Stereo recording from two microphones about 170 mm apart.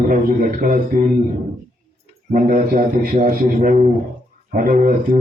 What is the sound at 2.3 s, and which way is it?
A man's voice, 50° right (ahead or behind).